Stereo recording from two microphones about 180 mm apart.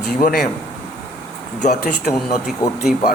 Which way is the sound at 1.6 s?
45° left (ahead or behind).